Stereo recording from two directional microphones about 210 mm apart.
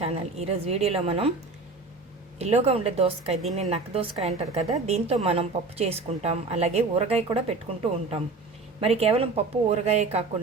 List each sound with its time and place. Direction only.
0.0 s a woman's voice: 30° right (ahead or behind)
2.4 s a woman's voice: 30° right (ahead or behind)